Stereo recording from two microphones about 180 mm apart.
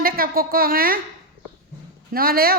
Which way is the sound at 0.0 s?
55° right (ahead or behind).